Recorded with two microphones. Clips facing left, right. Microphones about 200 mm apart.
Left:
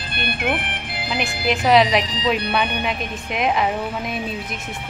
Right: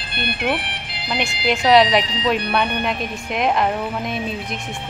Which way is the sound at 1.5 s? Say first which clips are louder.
Right 1 dB; centre (ahead or behind).